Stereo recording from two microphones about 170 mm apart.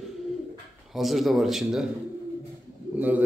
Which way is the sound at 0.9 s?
Centre (ahead or behind).